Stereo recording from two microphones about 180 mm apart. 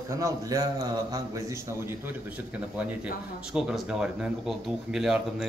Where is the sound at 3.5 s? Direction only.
5° right (ahead or behind).